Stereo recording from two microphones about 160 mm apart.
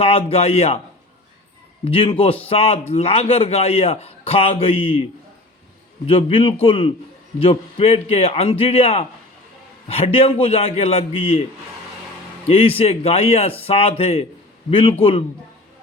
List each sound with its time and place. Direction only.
0.0 s a man's voice: 40° left (ahead or behind)
1.8 s a man's voice: 35° left (ahead or behind)
6.1 s a man's voice: 35° left (ahead or behind)
12.5 s a man's voice: 35° left (ahead or behind)